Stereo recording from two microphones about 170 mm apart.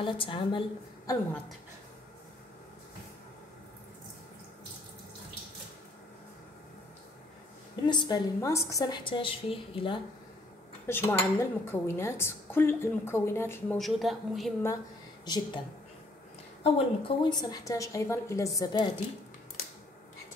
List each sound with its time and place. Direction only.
0.0 s a woman's voice: 30° left (ahead or behind)
7.8 s a woman's voice: 25° left (ahead or behind)
10.9 s a woman's voice: 15° left (ahead or behind)
13.7 s speech: centre (ahead or behind)
15.2 s a woman's voice: 25° left (ahead or behind)
16.6 s a woman's voice: 30° left (ahead or behind)